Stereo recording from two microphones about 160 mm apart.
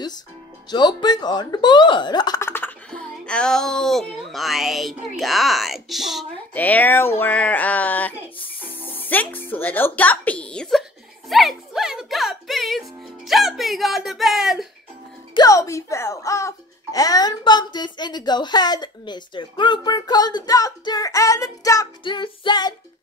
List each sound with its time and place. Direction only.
0.7 s speech: 25° left (ahead or behind)
2.5 s a child's voice: 10° left (ahead or behind)
6.5 s speech: 10° left (ahead or behind)
8.8 s music: 10° left (ahead or behind)
15.3 s speech: 20° left (ahead or behind)